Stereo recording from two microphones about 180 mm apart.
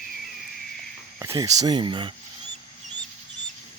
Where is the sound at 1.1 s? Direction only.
20° right (ahead or behind).